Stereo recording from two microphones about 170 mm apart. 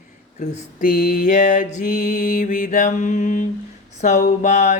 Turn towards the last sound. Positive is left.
turn(degrees=45)  # may be behind; listen again after turning